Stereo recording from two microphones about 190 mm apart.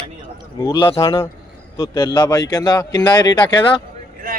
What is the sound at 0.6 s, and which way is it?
A man's voice, 20° left (ahead or behind).